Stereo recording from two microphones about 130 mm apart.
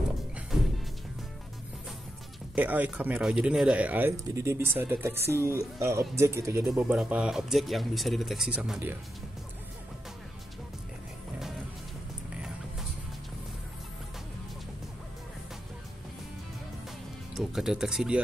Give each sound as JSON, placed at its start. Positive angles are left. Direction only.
{"t": 2.5, "sound": "speech", "side_deg": -10}
{"t": 6.8, "sound": "speech", "side_deg": -10}
{"t": 17.3, "sound": "speech", "side_deg": -5}